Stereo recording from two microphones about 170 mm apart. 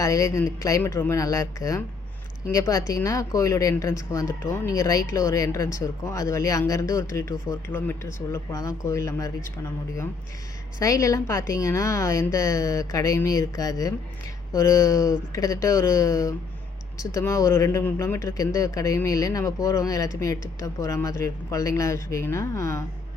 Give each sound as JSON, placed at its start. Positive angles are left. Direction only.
{"t": 0.0, "sound": "speech", "side_deg": 20}
{"t": 10.8, "sound": "speech", "side_deg": 20}